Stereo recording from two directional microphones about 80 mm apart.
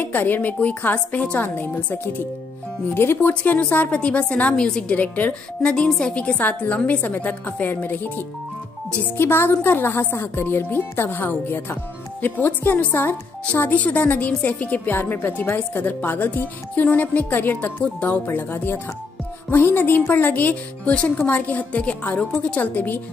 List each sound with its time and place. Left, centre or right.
0.0 s a woman's voice: left